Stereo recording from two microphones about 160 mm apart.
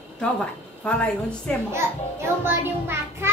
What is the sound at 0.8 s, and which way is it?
Speech, 5° left (ahead or behind).